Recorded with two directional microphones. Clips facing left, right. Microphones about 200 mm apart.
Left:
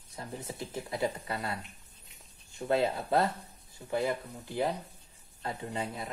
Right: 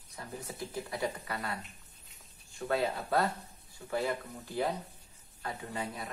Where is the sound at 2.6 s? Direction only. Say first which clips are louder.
Left 3 dB; 25° left (ahead or behind).